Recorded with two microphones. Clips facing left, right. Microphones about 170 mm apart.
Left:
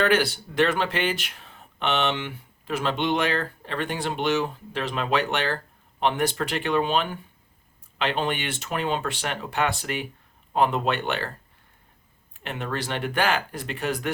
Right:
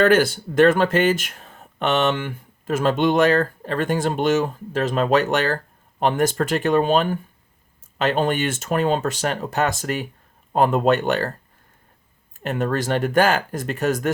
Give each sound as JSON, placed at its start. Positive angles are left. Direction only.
{"t": 0.0, "sound": "speech", "side_deg": -45}
{"t": 12.4, "sound": "speech", "side_deg": -45}